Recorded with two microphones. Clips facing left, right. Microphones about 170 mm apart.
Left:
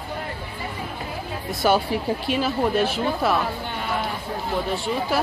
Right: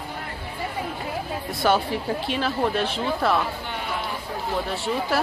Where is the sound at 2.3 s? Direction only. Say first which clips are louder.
Left 3 dB; 5° left (ahead or behind).